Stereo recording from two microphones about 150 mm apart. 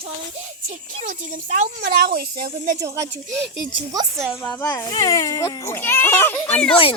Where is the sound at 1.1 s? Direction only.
55° right (ahead or behind).